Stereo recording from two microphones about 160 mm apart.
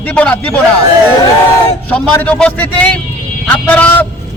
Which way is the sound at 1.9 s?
10° left (ahead or behind).